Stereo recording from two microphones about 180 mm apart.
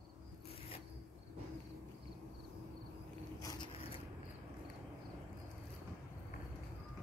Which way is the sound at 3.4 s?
25° left (ahead or behind).